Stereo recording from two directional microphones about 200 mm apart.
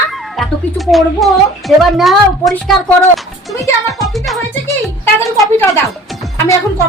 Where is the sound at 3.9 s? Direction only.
Centre (ahead or behind).